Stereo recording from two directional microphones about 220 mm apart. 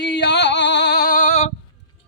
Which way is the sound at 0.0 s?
50° left (ahead or behind).